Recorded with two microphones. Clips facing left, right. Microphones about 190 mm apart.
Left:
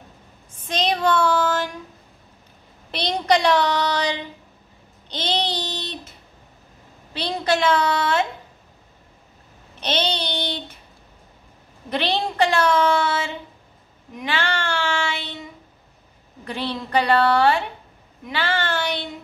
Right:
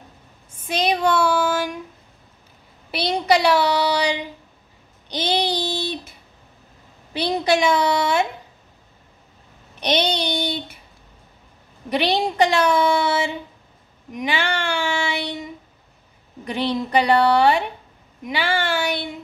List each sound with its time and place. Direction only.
0.7 s child singing: 10° right (ahead or behind)
2.9 s speech: 5° right (ahead or behind)
5.1 s babbling: 10° right (ahead or behind)
7.2 s speech: 15° right (ahead or behind)
9.8 s babbling: 15° right (ahead or behind)
11.9 s a woman's voice: 15° right (ahead or behind)
14.1 s child singing: 15° right (ahead or behind)
16.4 s speech: 15° right (ahead or behind)
18.2 s a sound: 10° right (ahead or behind)